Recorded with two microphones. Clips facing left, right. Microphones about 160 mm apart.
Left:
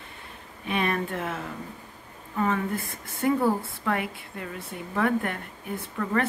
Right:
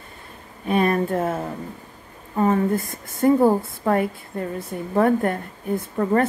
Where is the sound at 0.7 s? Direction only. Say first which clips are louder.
Right 7 dB; 40° right (ahead or behind).